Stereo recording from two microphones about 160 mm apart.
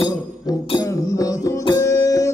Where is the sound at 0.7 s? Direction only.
25° left (ahead or behind).